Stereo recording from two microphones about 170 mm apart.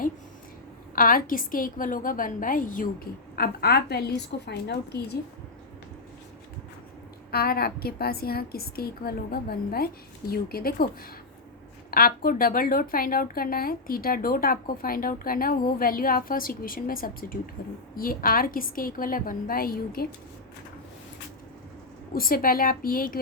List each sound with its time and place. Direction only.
0.9 s a woman's voice: 55° left (ahead or behind); by 5.1 s 70° left (ahead or behind)
7.3 s a woman's voice: 65° left (ahead or behind)
11.9 s a woman's voice: 60° left (ahead or behind)
22.1 s a woman's voice: 60° left (ahead or behind)